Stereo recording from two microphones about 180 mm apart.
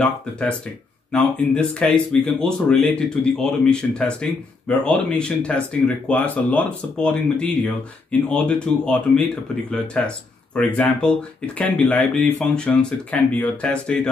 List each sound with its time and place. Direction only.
0.0 s speech: 5° left (ahead or behind)